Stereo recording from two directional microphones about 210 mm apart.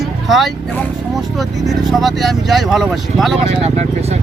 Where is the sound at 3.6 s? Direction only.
30° right (ahead or behind).